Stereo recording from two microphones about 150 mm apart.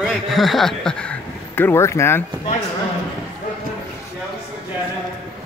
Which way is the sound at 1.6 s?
15° left (ahead or behind).